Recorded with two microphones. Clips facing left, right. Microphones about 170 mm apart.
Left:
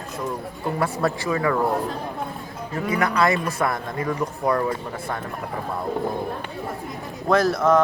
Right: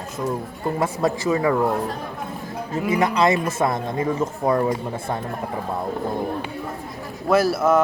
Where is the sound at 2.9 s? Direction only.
20° right (ahead or behind).